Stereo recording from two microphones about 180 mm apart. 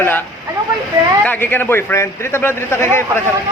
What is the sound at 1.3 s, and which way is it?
A man's voice, 10° left (ahead or behind).